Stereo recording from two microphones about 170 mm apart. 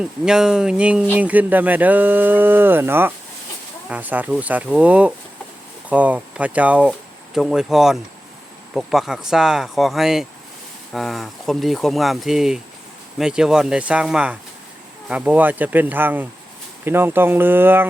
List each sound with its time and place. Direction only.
0.0 s speech: 5° right (ahead or behind)